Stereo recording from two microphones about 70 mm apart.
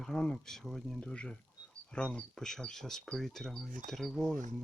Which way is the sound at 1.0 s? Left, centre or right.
Centre.